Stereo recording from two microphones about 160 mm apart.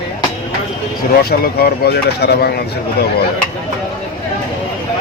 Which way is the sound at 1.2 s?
75° left (ahead or behind).